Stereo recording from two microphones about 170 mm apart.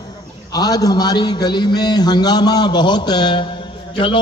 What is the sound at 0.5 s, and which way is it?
A man's voice, 25° left (ahead or behind).